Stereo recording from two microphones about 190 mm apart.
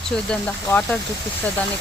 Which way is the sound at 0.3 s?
5° left (ahead or behind).